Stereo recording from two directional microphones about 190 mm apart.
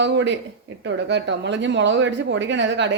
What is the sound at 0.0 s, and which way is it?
Speech, 70° right (ahead or behind).